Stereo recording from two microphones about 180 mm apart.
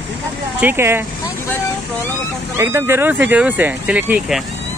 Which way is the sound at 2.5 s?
15° right (ahead or behind).